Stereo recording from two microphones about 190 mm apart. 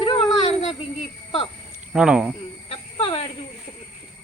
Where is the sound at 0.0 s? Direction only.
30° left (ahead or behind).